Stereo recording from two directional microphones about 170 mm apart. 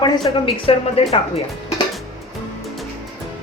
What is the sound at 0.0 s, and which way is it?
A woman's voice, 30° left (ahead or behind).